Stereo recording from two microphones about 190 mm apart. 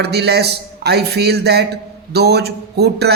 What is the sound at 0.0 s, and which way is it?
A man's voice, 60° right (ahead or behind).